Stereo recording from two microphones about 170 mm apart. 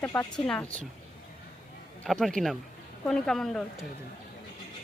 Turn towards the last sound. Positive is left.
turn(degrees=5)  # may be behind; listen again after turning